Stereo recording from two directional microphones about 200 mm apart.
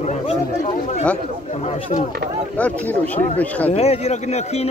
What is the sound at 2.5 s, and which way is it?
Speech, 10° left (ahead or behind).